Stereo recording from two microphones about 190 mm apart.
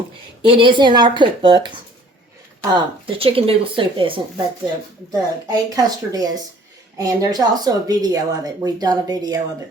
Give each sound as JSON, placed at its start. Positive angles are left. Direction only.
{"t": 0.4, "sound": "speech", "side_deg": -25}
{"t": 2.7, "sound": "speech", "side_deg": -30}
{"t": 5.5, "sound": "speech", "side_deg": -20}